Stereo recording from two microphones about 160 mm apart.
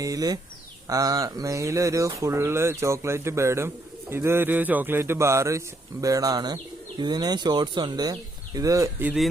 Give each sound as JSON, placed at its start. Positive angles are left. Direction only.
{"t": 0.0, "sound": "a man's voice", "side_deg": -20}
{"t": 9.0, "sound": "speech", "side_deg": 0}